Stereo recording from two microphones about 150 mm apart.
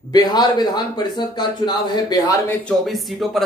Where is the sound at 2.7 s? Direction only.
Centre (ahead or behind).